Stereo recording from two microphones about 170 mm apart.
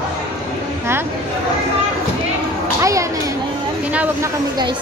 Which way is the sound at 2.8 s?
20° right (ahead or behind).